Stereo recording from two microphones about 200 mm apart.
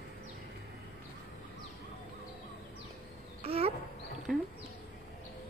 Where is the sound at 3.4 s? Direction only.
30° right (ahead or behind).